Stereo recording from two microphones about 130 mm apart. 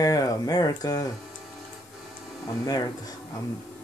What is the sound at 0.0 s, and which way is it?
Speech, 25° left (ahead or behind).